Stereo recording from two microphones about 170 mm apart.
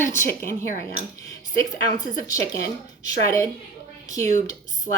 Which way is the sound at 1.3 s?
20° left (ahead or behind).